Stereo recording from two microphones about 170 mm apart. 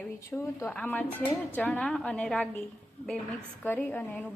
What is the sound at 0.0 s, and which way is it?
A woman's voice, 15° left (ahead or behind).